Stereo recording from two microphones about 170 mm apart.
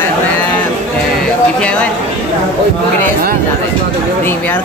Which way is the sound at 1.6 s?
5° left (ahead or behind).